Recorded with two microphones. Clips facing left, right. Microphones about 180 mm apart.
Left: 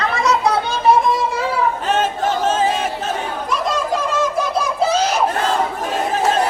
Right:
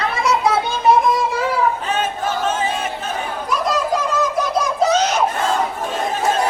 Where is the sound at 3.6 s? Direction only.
25° left (ahead or behind).